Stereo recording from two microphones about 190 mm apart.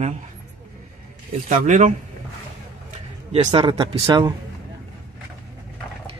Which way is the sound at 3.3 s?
30° right (ahead or behind).